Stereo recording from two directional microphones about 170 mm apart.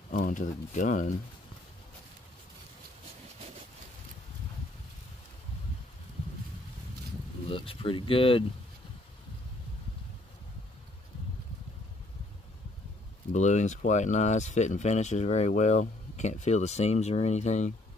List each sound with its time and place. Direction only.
0.1 s speech: 50° left (ahead or behind)
7.4 s speech: 30° left (ahead or behind)
13.3 s speech: 45° left (ahead or behind)